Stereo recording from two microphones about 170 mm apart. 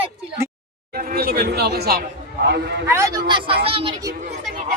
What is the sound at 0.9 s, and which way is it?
Speech, 60° right (ahead or behind).